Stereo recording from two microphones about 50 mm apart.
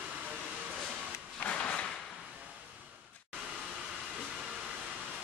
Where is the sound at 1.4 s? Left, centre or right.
Left.